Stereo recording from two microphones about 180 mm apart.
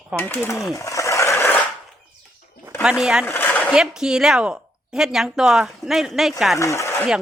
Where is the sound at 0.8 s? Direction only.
15° left (ahead or behind).